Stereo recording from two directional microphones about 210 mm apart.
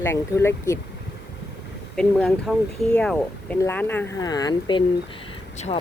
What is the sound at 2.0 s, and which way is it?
Speech, 5° left (ahead or behind).